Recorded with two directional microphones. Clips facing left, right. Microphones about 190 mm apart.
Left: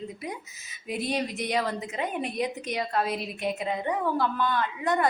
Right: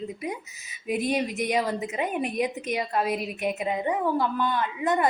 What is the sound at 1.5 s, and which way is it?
A woman's voice, 15° right (ahead or behind).